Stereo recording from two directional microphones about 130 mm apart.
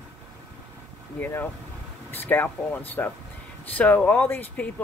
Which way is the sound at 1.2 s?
20° left (ahead or behind).